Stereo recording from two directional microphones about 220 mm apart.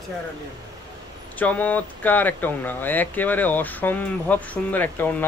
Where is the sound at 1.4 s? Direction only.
5° left (ahead or behind).